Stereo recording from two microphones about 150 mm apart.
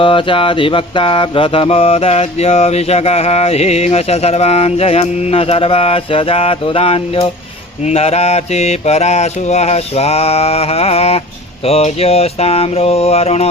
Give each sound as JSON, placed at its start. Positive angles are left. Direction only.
{"t": 0.0, "sound": "mantra", "side_deg": 35}